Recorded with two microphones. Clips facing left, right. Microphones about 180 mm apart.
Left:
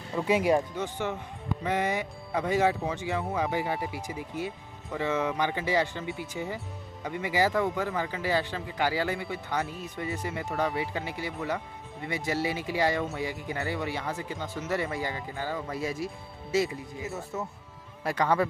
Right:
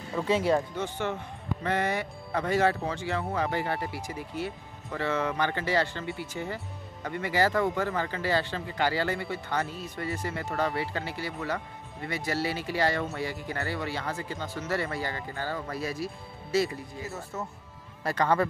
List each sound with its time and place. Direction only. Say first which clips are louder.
0.1 s a man's voice: left 1 dB; 10° left (ahead or behind)
17.1 s a man's voice: left 2 dB; centre (ahead or behind)